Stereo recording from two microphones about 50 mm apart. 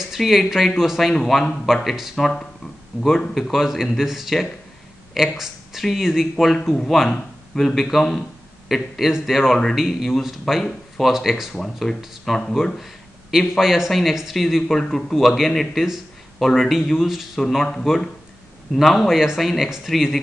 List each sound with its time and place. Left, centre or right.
0.0 s speech: centre
2.1 s speech: centre
2.9 s a man's voice: right
3.5 s speech: centre
6.7 s speech: centre
11.5 s speech: centre
12.8 s a man's voice: centre
17.4 s speech: centre
18.8 s speech: centre